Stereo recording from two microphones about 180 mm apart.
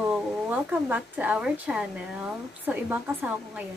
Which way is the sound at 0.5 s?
10° right (ahead or behind).